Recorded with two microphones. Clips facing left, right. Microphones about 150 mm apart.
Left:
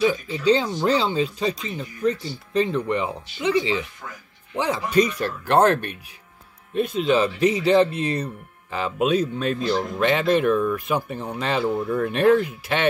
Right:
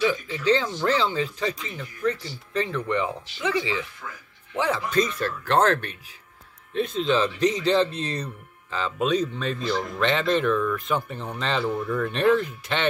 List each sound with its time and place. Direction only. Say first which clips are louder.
0.4 s speech: left 3 dB; 15° left (ahead or behind)